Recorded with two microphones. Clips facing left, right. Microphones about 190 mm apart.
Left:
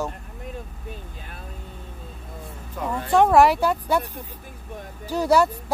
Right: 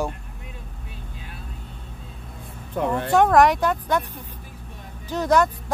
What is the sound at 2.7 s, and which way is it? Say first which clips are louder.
Speech: right 5 dB; 60° right (ahead or behind).